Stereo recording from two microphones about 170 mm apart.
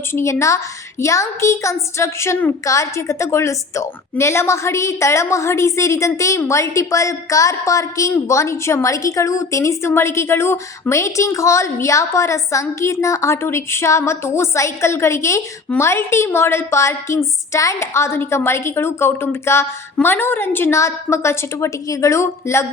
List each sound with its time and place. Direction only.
0.1 s a woman's voice: 15° left (ahead or behind)